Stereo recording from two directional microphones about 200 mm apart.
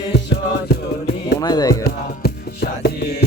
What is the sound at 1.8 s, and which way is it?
Music, 50° left (ahead or behind).